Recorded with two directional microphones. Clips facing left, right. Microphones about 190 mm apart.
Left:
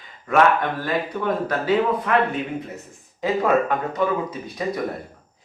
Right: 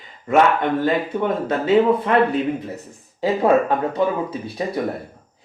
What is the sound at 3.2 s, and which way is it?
Speech, 30° right (ahead or behind).